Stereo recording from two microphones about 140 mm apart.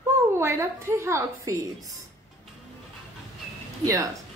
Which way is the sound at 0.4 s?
20° right (ahead or behind).